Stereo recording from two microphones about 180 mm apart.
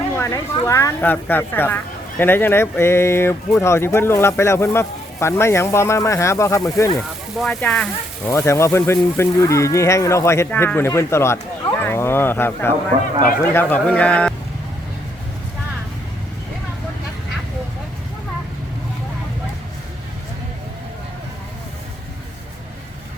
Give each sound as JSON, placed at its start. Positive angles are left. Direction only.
{"t": 0.2, "sound": "speech", "side_deg": 15}
{"t": 7.3, "sound": "speech", "side_deg": 0}